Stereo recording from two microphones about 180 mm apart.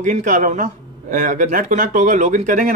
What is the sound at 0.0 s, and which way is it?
A man's voice, 45° right (ahead or behind).